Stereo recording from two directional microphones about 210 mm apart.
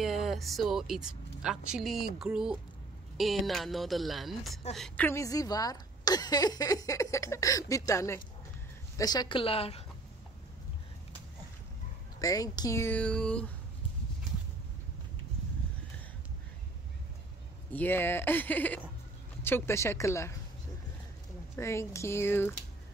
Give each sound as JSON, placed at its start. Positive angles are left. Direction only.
{"t": 0.0, "sound": "a woman's voice", "side_deg": 0}
{"t": 12.2, "sound": "a woman's voice", "side_deg": 15}
{"t": 17.7, "sound": "a woman's voice", "side_deg": 10}
{"t": 21.5, "sound": "a woman's voice", "side_deg": 15}